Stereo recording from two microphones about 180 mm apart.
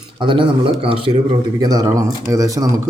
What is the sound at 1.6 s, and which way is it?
Speech, 20° right (ahead or behind).